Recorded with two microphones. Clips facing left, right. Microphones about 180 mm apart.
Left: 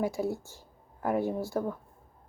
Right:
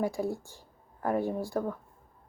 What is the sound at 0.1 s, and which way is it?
Speech, 5° left (ahead or behind).